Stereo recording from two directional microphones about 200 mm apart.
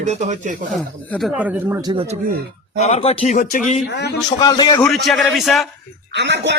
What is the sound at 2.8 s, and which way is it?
Speech, 30° left (ahead or behind).